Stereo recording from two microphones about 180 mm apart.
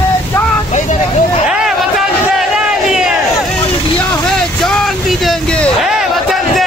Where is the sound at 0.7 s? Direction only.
45° left (ahead or behind).